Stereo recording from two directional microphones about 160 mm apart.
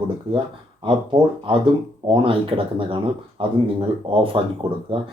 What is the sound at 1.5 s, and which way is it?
Speech, 35° right (ahead or behind).